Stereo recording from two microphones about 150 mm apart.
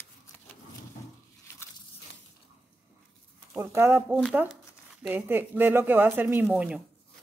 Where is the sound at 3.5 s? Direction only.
15° right (ahead or behind).